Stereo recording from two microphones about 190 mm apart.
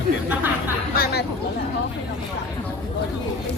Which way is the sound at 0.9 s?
55° left (ahead or behind).